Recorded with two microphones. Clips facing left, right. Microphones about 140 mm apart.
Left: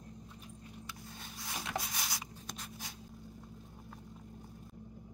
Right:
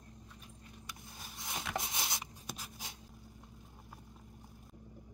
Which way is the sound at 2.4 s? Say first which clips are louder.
Even; 5° right (ahead or behind).